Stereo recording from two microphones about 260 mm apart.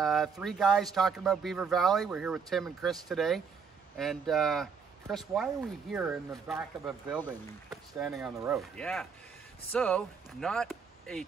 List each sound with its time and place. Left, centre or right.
0.0 s speech: centre